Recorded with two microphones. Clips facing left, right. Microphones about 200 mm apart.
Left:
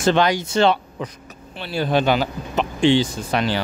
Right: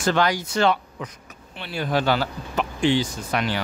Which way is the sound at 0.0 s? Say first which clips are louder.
Left 4 dB; 25° left (ahead or behind).